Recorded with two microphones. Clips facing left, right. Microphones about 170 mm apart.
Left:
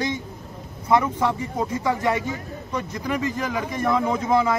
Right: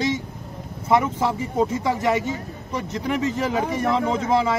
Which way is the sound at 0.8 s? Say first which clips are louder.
Even; 25° right (ahead or behind).